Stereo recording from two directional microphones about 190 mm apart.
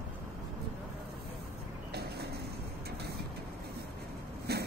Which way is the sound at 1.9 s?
55° right (ahead or behind).